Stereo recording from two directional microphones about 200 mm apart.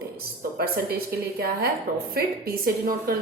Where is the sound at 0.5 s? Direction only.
50° right (ahead or behind).